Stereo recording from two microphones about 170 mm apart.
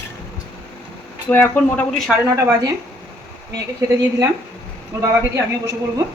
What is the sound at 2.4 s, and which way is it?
A woman's voice, 20° right (ahead or behind).